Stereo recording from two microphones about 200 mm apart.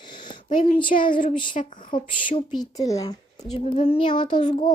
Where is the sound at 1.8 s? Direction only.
25° left (ahead or behind).